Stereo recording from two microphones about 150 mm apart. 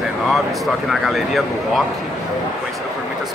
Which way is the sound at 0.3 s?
Centre (ahead or behind).